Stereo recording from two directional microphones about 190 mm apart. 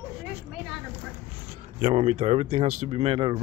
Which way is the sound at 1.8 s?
30° right (ahead or behind).